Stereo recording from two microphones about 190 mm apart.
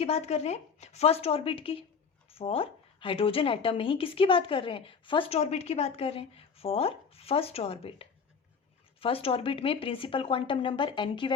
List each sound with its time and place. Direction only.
0.0 s speech: 30° left (ahead or behind)